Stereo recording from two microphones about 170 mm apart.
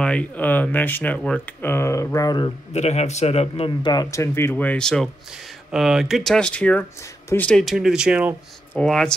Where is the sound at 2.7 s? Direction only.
40° left (ahead or behind); by 8.4 s 5° right (ahead or behind).